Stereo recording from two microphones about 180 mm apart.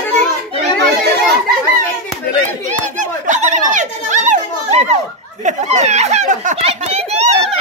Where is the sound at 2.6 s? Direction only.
45° right (ahead or behind).